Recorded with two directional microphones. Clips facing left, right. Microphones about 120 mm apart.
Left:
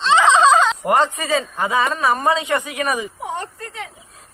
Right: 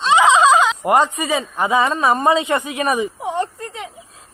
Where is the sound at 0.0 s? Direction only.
15° right (ahead or behind).